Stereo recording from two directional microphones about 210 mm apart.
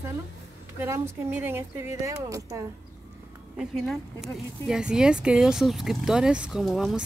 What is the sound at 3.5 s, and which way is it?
Speech, centre (ahead or behind).